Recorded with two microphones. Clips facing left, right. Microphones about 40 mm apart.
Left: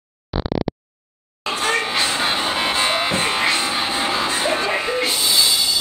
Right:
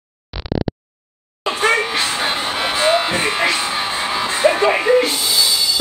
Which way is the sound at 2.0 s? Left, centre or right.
Centre.